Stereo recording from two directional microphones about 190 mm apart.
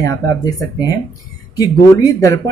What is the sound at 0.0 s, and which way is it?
Speech, 20° left (ahead or behind).